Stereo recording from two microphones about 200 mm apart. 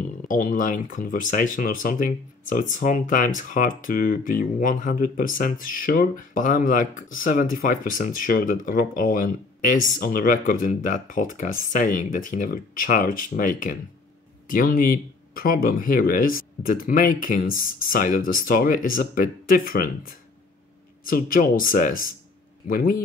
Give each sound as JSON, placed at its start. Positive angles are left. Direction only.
{"t": 0.3, "sound": "speech", "side_deg": 40}